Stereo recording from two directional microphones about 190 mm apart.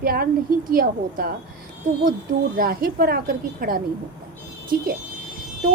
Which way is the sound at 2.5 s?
50° right (ahead or behind).